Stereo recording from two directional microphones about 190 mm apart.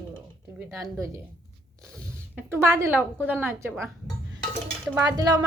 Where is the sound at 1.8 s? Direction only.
5° left (ahead or behind).